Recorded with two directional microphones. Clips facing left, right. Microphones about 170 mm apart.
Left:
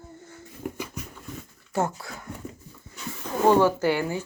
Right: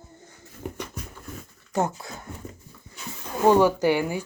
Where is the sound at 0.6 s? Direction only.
10° left (ahead or behind).